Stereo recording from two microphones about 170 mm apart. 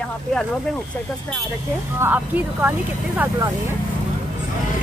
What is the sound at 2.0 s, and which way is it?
Speech, 10° right (ahead or behind).